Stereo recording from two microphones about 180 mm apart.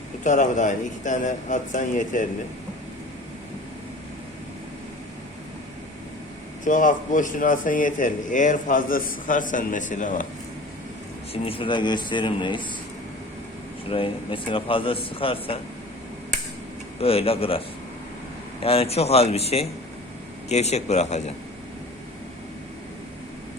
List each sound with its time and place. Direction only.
0.3 s speech: 45° left (ahead or behind)
6.7 s speech: 45° left (ahead or behind)
11.4 s speech: 30° left (ahead or behind)
13.9 s speech: 30° left (ahead or behind)
17.0 s a man's voice: 35° left (ahead or behind)
18.6 s a man's voice: 30° left (ahead or behind)